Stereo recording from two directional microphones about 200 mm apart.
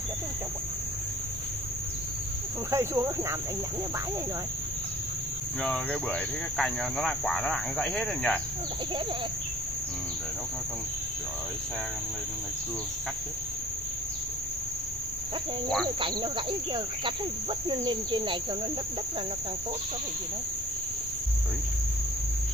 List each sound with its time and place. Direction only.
2.7 s speech: 15° right (ahead or behind)
5.6 s speech: 5° left (ahead or behind)
16.0 s speech: 25° right (ahead or behind)